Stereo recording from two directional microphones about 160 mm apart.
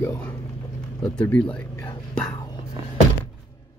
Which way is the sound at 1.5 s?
10° left (ahead or behind).